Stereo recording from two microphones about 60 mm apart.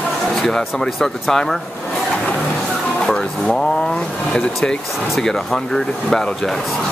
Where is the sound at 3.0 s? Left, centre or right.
Centre.